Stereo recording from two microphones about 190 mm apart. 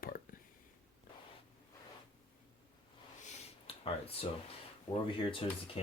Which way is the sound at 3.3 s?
30° left (ahead or behind).